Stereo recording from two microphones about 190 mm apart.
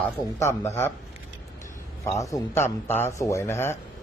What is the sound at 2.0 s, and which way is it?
Speech, 15° left (ahead or behind).